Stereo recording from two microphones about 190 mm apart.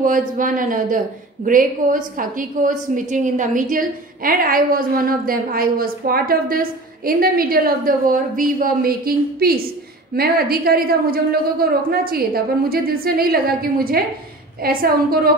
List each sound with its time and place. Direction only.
0.0 s a woman's voice: 45° right (ahead or behind)